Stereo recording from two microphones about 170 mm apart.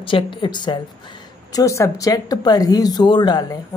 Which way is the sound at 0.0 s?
30° left (ahead or behind).